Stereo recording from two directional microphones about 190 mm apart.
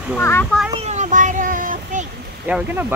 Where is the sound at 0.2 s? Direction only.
10° left (ahead or behind).